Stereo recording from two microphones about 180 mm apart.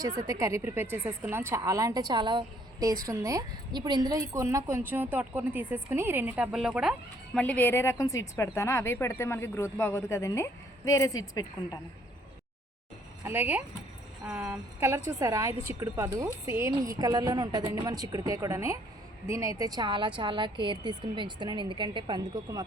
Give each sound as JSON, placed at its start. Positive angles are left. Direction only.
{"t": 0.2, "sound": "a woman's voice", "side_deg": -15}
{"t": 7.3, "sound": "a woman's voice", "side_deg": 10}
{"t": 13.2, "sound": "a woman's voice", "side_deg": -10}